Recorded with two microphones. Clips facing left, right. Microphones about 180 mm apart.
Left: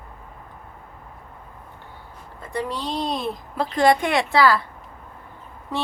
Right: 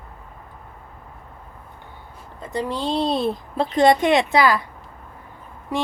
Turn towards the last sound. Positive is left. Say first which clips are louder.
# right 3 dB
turn(degrees=-10)  # may be behind; listen again after turning